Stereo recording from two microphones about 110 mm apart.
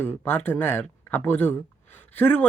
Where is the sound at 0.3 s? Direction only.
15° left (ahead or behind).